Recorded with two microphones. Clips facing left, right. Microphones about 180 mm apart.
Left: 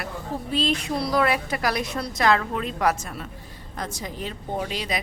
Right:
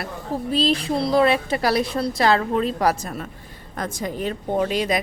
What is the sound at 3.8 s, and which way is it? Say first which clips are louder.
A woman's voice: right 6 dB; 50° right (ahead or behind).